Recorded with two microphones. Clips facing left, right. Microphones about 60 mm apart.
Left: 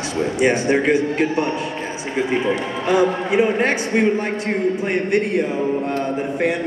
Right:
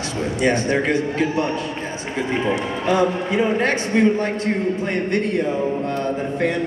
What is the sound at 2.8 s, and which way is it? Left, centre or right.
A man's voice, centre.